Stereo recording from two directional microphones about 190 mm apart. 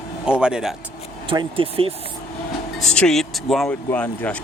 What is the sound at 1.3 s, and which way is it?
Speech, 25° right (ahead or behind).